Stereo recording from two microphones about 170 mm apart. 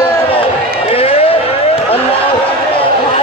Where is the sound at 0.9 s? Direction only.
35° left (ahead or behind).